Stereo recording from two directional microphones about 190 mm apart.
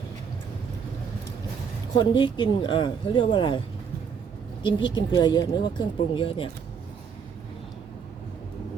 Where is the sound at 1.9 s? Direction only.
25° left (ahead or behind).